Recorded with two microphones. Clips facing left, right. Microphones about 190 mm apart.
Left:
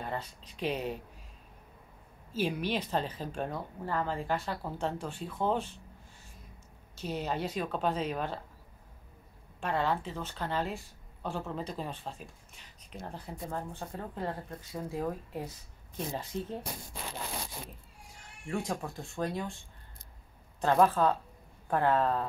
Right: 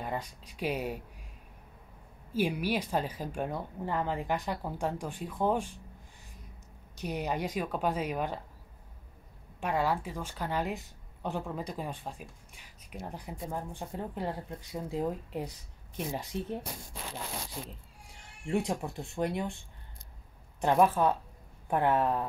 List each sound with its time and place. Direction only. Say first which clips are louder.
0.0 s a woman's voice: right 1 dB; 10° right (ahead or behind)
2.3 s a woman's voice: right 2 dB; 10° right (ahead or behind)
7.0 s a woman's voice: right 1 dB; 15° right (ahead or behind)
9.6 s a woman's voice: right 1 dB; 10° right (ahead or behind)
18.7 s speech: right 2 dB; 20° right (ahead or behind)
20.6 s a woman's voice: even; 15° right (ahead or behind)